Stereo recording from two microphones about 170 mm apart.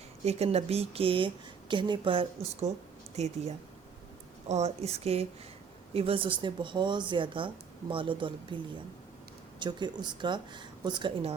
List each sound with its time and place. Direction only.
0.3 s speech: 40° right (ahead or behind)
9.6 s speech: 25° right (ahead or behind)